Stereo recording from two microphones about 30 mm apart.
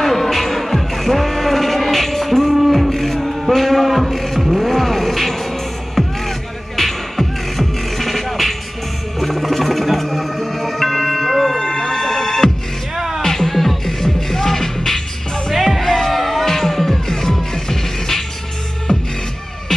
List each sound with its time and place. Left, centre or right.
0.0 s music: centre
2.5 s music: centre
3.5 s a sound: centre
4.4 s music: centre
11.6 s music: centre
12.9 s music: centre
13.2 s music: centre
15.5 s music: centre
18.9 s music: left